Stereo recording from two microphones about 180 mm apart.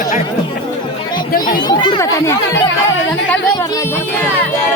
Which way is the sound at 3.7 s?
15° left (ahead or behind).